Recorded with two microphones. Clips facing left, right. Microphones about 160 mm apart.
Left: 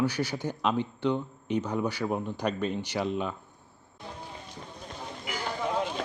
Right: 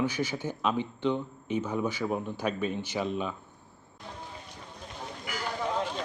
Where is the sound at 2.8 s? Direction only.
15° left (ahead or behind).